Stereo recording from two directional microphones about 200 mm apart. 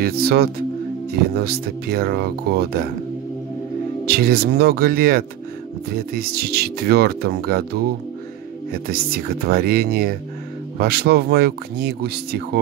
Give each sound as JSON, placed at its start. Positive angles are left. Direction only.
{"t": 0.0, "sound": "speech", "side_deg": -50}
{"t": 4.0, "sound": "speech", "side_deg": -50}
{"t": 8.7, "sound": "speech", "side_deg": -50}